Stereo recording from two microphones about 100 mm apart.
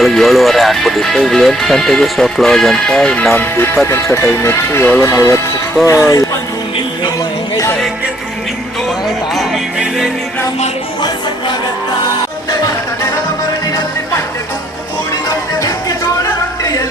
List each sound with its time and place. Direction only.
0.0 s speech: centre (ahead or behind)
3.3 s speech: 25° left (ahead or behind)
5.0 s speech: 30° left (ahead or behind)
9.3 s music: centre (ahead or behind)
12.5 s music: 35° left (ahead or behind)